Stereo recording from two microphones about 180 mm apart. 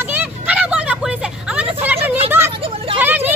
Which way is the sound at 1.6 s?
10° right (ahead or behind).